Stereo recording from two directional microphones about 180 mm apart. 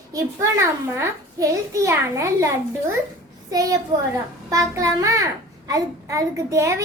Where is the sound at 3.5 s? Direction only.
20° right (ahead or behind).